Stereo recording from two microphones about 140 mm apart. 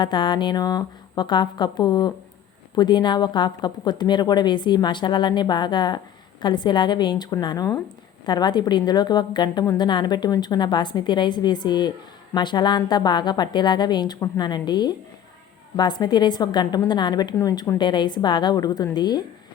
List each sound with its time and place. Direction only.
0.0 s a woman's voice: 35° left (ahead or behind)